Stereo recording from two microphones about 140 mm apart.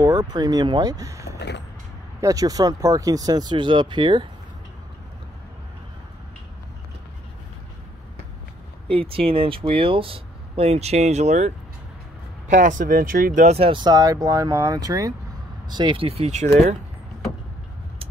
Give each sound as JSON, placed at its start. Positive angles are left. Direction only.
{"t": 0.0, "sound": "speech", "side_deg": -30}
{"t": 8.9, "sound": "speech", "side_deg": -40}
{"t": 12.4, "sound": "speech", "side_deg": -65}
{"t": 13.6, "sound": "speech", "side_deg": -35}